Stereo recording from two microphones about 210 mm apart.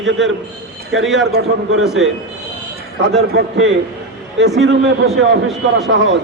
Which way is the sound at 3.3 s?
60° right (ahead or behind).